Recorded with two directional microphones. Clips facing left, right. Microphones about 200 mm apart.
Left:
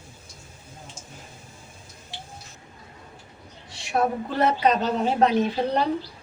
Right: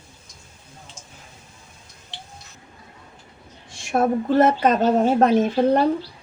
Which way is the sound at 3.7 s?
50° right (ahead or behind).